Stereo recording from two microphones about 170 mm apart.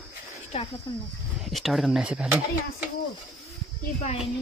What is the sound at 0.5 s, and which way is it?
Speech, 35° left (ahead or behind).